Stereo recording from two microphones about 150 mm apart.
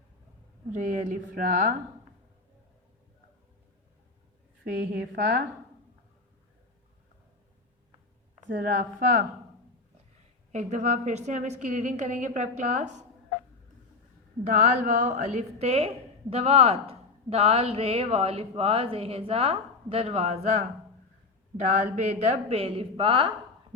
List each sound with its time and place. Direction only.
0.7 s a woman's voice: 55° right (ahead or behind)
4.6 s a woman's voice: 90° right
8.8 s speech: 70° right (ahead or behind)
10.5 s a woman's voice: 50° right (ahead or behind)
14.4 s a woman's voice: 55° right (ahead or behind); by 23.3 s 35° right (ahead or behind)